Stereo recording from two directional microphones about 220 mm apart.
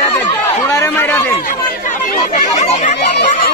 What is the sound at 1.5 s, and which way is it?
Speech, 35° left (ahead or behind).